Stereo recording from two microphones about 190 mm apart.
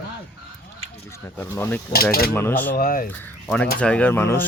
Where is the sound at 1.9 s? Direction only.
50° left (ahead or behind).